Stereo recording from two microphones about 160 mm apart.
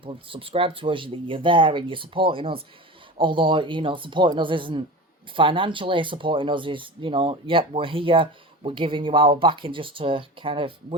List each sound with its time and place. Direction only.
0.0 s speech: 35° right (ahead or behind)